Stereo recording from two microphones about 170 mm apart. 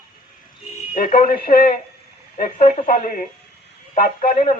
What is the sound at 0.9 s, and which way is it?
Speech, 55° left (ahead or behind).